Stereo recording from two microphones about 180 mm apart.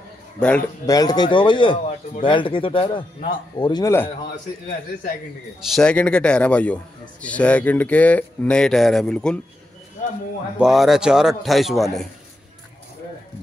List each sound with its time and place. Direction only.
0.4 s speech: 5° left (ahead or behind)
0.8 s speech: 20° left (ahead or behind)
5.8 s speech: 5° left (ahead or behind)
10.6 s a man's voice: centre (ahead or behind)